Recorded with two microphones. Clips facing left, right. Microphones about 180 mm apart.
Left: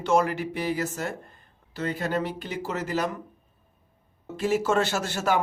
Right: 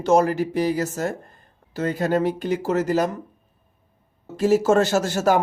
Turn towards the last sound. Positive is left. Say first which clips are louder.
# right 6 dB
turn(degrees=-40)  # may be behind; listen again after turning